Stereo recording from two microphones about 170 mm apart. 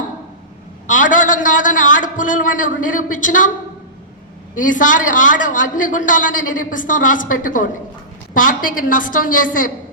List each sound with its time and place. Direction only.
0.9 s a man's voice: 50° left (ahead or behind)
4.5 s a man's voice: 50° left (ahead or behind)